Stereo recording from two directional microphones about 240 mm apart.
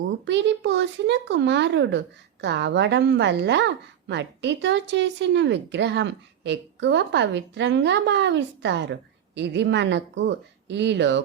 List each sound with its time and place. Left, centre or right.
0.3 s a woman's voice: right